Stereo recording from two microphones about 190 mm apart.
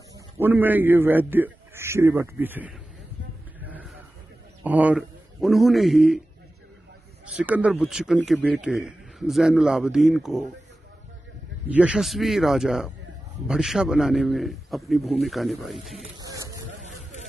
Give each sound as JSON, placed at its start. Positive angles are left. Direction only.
{"t": 0.4, "sound": "a man's voice", "side_deg": -10}
{"t": 3.6, "sound": "a sound", "side_deg": -10}
{"t": 4.6, "sound": "a man's voice", "side_deg": -10}
{"t": 7.2, "sound": "a man's voice", "side_deg": -5}
{"t": 11.7, "sound": "a man's voice", "side_deg": -5}
{"t": 16.2, "sound": "spray", "side_deg": -20}